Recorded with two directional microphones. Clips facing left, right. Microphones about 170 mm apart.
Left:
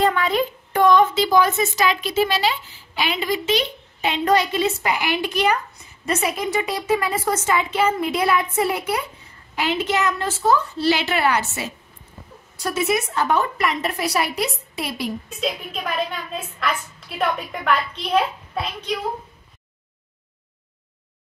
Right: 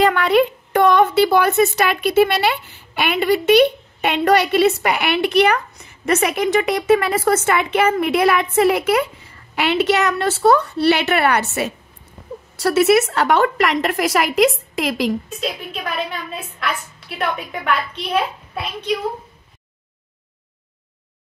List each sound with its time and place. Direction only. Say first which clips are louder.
0.0 s a woman's voice: right 5 dB; 75° right (ahead or behind); by 9.0 s 90° right
9.6 s a woman's voice: right 5 dB; 75° right (ahead or behind)
12.5 s a woman's voice: right 8 dB; 75° right (ahead or behind)
15.4 s a woman's voice: even; 5° right (ahead or behind)